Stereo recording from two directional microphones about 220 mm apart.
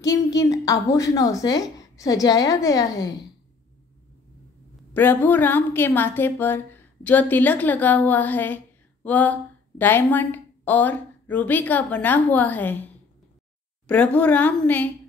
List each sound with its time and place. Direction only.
0.0 s a woman's voice: 15° left (ahead or behind)
4.9 s a woman's voice: 10° left (ahead or behind)